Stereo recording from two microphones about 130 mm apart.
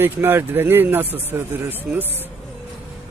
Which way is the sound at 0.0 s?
15° right (ahead or behind).